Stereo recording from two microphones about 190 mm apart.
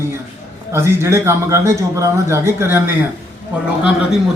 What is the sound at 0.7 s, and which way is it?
Speech, 15° right (ahead or behind).